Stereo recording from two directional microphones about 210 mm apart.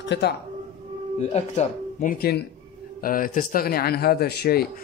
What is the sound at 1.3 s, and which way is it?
Speech, 30° left (ahead or behind).